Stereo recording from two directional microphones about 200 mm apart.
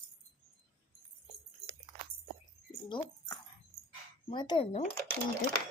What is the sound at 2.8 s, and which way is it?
Speech, 25° left (ahead or behind).